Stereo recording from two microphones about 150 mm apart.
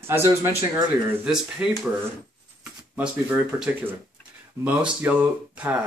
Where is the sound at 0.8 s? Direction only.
5° right (ahead or behind).